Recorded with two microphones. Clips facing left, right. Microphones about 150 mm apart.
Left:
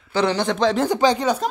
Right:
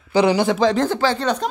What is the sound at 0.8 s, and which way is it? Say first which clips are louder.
Speech: left 1 dB; 15° left (ahead or behind).